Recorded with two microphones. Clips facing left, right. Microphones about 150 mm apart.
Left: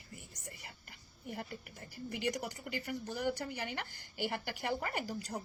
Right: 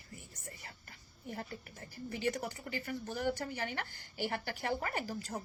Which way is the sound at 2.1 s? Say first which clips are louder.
Right 1 dB; 15° left (ahead or behind).